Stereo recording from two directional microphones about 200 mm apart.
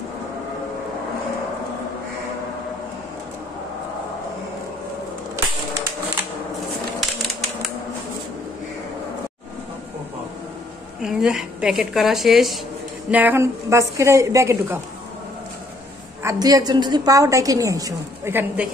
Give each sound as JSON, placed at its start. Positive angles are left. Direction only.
{"t": 11.0, "sound": "a woman's voice", "side_deg": -5}
{"t": 16.2, "sound": "a woman's voice", "side_deg": -15}